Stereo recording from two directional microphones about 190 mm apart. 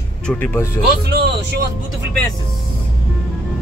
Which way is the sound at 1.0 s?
60° right (ahead or behind).